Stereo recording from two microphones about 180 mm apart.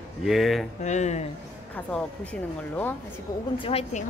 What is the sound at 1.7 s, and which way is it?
Speech, 10° left (ahead or behind).